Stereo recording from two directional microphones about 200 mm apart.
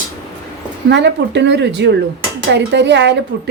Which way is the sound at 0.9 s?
60° right (ahead or behind).